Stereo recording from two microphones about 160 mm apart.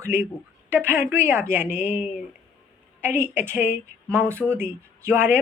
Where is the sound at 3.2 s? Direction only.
15° right (ahead or behind).